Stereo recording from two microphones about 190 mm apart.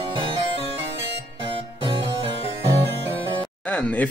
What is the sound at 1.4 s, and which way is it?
Music, 25° right (ahead or behind).